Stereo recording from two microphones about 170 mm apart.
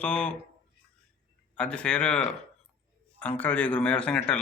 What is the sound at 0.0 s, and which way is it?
Speech, 5° left (ahead or behind).